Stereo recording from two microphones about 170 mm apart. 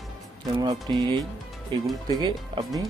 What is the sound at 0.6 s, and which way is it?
Speech, 25° right (ahead or behind).